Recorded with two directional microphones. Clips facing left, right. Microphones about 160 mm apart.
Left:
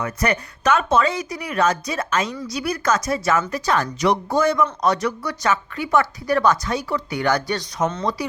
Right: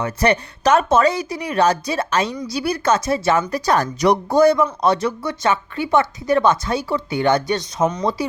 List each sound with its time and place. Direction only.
0.0 s speech: 30° right (ahead or behind)
3.5 s speech: 40° right (ahead or behind); by 8.0 s 15° right (ahead or behind)